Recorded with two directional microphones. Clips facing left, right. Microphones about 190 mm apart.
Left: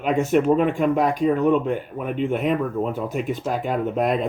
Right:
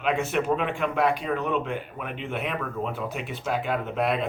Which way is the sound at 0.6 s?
45° left (ahead or behind).